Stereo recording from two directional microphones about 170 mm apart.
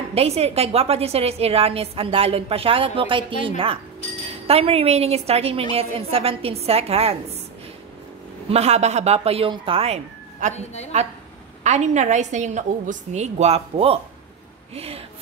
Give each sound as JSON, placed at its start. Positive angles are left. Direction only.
{"t": 0.1, "sound": "a woman's voice", "side_deg": -35}
{"t": 8.5, "sound": "a woman's voice", "side_deg": -40}
{"t": 10.5, "sound": "a woman's voice", "side_deg": 40}
{"t": 11.6, "sound": "a woman's voice", "side_deg": -45}